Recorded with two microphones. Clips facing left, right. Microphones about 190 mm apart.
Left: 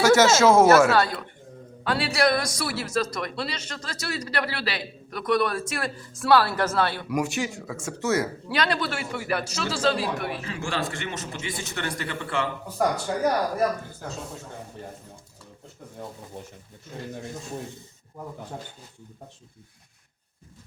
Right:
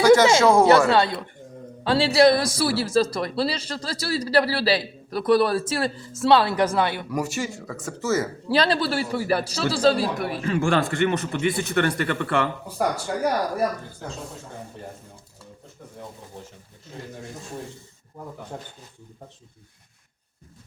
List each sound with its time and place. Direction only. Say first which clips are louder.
0.4 s speech: even; 5° left (ahead or behind)
0.9 s speech: right 2 dB; 25° right (ahead or behind)
7.1 s speech: even; centre (ahead or behind)
8.4 s speech: right 5 dB; 30° right (ahead or behind)
10.4 s speech: right 8 dB; 55° right (ahead or behind)
13.1 s speech: even; 25° left (ahead or behind)